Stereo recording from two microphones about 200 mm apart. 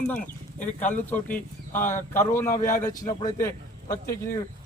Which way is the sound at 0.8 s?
10° left (ahead or behind).